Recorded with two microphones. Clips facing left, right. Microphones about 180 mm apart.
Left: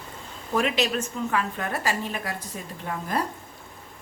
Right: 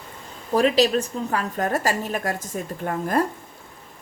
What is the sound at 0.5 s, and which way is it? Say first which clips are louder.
A woman's voice: right 6 dB; 35° right (ahead or behind).